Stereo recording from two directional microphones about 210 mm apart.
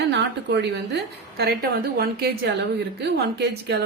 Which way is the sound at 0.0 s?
55° right (ahead or behind).